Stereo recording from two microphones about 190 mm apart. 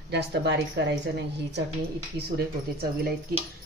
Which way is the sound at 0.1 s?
60° right (ahead or behind).